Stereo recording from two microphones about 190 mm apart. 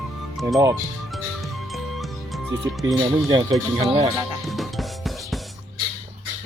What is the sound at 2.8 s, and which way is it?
Speech, centre (ahead or behind).